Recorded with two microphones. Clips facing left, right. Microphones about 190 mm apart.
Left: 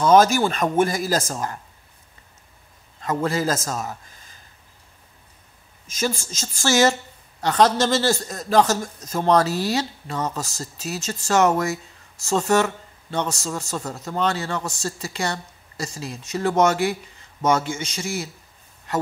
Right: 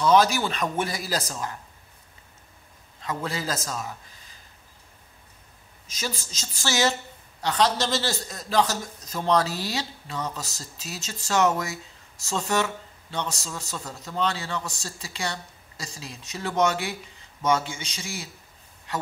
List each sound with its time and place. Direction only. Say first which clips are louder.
0.0 s a man's voice: left 4 dB; 45° left (ahead or behind)
3.0 s a man's voice: left 8 dB; 50° left (ahead or behind)
5.9 s a man's voice: left 8 dB; 50° left (ahead or behind)